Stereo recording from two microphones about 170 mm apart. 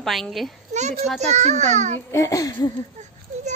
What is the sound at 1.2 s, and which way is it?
Speech, 40° right (ahead or behind).